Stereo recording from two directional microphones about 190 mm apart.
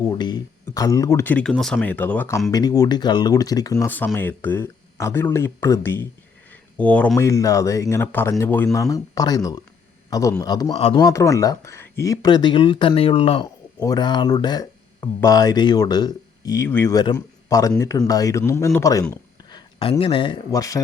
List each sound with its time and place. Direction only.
0.0 s speech: 20° left (ahead or behind)